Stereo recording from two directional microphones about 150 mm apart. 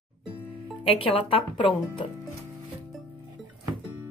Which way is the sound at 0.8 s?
40° left (ahead or behind).